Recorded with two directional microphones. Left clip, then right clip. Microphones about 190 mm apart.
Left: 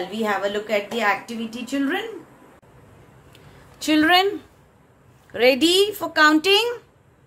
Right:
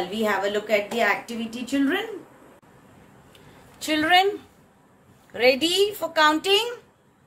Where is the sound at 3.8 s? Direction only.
30° left (ahead or behind).